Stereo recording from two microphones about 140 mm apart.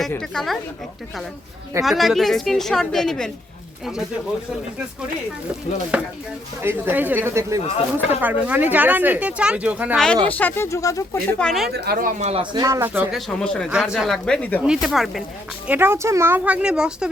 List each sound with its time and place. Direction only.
0.2 s a woman's voice: centre (ahead or behind)
1.8 s a woman's voice: centre (ahead or behind)
5.9 s speech: 10° right (ahead or behind)
10.2 s speech: 10° left (ahead or behind)
11.3 s a woman's voice: 5° left (ahead or behind)
11.9 s speech: 90° right
12.2 s speech: 45° right (ahead or behind)
12.5 s speech: 25° right (ahead or behind)
13.1 s a woman's voice: 5° left (ahead or behind)
14.6 s a woman's voice: 5° right (ahead or behind)
15.6 s speech: 15° right (ahead or behind)